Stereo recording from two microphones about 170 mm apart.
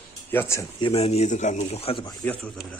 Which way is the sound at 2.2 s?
5° left (ahead or behind).